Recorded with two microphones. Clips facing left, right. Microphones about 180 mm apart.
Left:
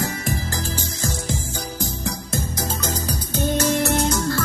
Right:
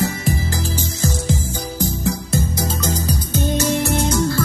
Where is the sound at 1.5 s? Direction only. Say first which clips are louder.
Right 5 dB; 10° right (ahead or behind).